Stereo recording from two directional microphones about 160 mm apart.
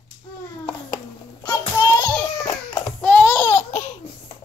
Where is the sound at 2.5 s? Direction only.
20° left (ahead or behind).